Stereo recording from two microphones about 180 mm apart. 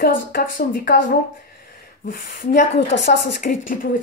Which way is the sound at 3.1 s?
50° left (ahead or behind).